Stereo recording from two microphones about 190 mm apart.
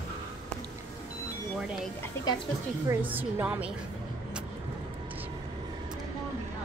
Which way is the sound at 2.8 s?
10° right (ahead or behind).